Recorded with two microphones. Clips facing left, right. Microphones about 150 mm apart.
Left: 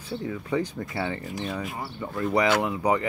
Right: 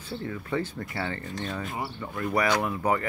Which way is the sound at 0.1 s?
15° left (ahead or behind).